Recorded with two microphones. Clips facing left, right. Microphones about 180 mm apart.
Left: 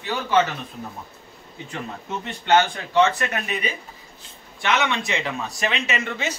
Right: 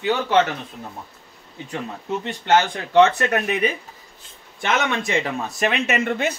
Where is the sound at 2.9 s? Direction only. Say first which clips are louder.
Right 5 dB; 55° right (ahead or behind).